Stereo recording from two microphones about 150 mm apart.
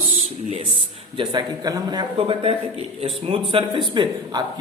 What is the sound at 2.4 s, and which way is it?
A woman's voice, 40° right (ahead or behind).